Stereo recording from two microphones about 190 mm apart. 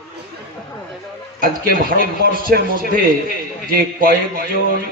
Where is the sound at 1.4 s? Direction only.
50° right (ahead or behind).